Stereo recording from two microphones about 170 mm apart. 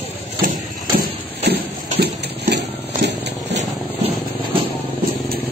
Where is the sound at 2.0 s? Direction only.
75° right (ahead or behind).